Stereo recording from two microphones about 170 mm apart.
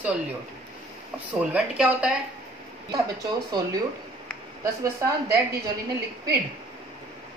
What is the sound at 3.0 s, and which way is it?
Speech, 20° right (ahead or behind).